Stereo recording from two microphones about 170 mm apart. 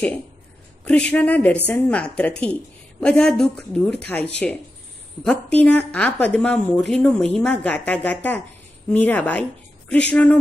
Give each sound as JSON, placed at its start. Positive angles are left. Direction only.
{"t": 0.8, "sound": "a woman's voice", "side_deg": 5}